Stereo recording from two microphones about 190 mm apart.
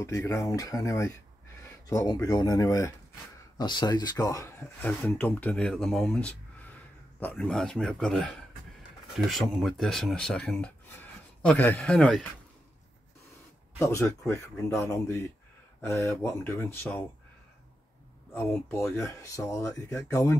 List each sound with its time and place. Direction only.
0.0 s a man's voice: 15° left (ahead or behind)
13.7 s speech: 15° left (ahead or behind)
18.3 s speech: 10° left (ahead or behind)